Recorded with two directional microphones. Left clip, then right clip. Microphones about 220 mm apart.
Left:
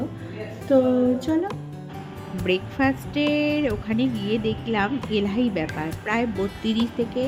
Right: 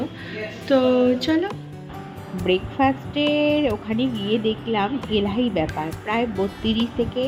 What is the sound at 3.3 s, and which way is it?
Speech, 10° left (ahead or behind).